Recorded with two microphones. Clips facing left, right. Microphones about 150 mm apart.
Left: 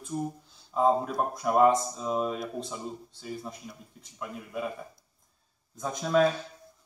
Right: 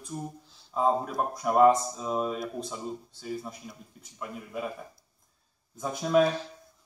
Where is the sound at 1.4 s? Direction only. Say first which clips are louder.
Right 2 dB; centre (ahead or behind).